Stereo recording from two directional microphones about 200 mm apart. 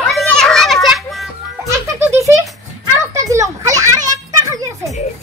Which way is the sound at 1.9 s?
15° right (ahead or behind).